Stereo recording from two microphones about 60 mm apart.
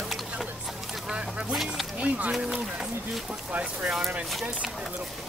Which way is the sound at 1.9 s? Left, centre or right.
Right.